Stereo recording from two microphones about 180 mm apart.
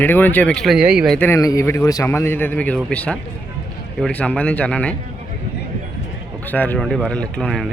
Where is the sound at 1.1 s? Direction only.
10° left (ahead or behind).